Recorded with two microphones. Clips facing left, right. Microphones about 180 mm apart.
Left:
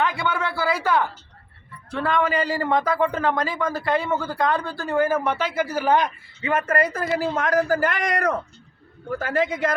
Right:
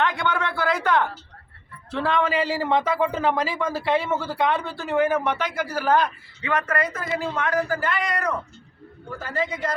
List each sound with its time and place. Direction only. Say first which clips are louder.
0.0 s a sound: even; 5° left (ahead or behind)
1.9 s a man's voice: even; centre (ahead or behind)
6.4 s a man's voice: left 3 dB; 25° left (ahead or behind); by 8.3 s 45° left (ahead or behind)
9.4 s a woman's voice: left 3 dB; 55° left (ahead or behind)